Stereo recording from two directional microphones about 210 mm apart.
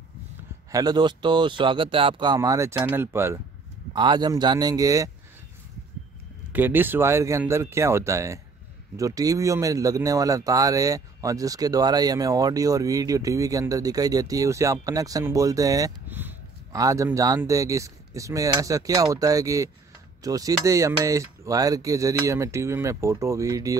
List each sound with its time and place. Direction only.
0.7 s speech: 20° right (ahead or behind)
6.5 s speech: 10° right (ahead or behind)